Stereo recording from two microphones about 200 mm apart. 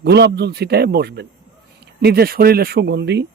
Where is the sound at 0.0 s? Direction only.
55° right (ahead or behind).